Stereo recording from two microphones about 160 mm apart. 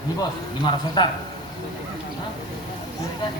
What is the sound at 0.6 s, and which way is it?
Speech, 30° left (ahead or behind).